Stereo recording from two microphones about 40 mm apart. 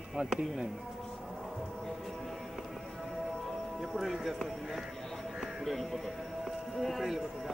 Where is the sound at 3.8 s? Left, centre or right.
Centre.